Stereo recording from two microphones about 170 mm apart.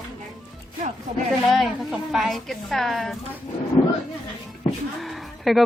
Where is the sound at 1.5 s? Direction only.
Centre (ahead or behind).